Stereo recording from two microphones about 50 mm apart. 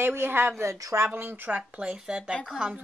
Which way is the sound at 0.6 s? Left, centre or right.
Right.